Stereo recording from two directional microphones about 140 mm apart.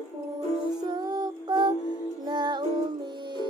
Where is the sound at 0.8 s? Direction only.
30° right (ahead or behind).